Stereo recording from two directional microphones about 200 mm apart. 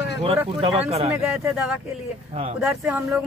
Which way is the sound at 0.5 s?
30° right (ahead or behind).